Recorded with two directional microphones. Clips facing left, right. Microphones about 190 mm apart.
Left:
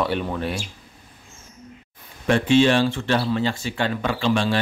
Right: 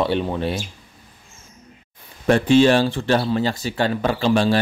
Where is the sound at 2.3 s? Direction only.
40° right (ahead or behind).